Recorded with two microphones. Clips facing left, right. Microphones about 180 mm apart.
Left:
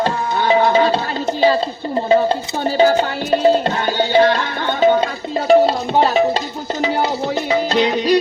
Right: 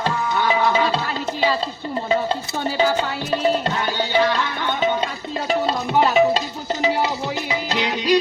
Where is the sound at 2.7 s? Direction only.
30° left (ahead or behind).